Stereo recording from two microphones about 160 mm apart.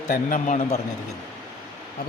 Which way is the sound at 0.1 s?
55° left (ahead or behind).